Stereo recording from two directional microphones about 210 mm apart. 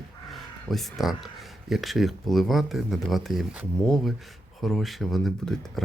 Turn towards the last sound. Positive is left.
turn(degrees=0)  # may be behind; listen again after turning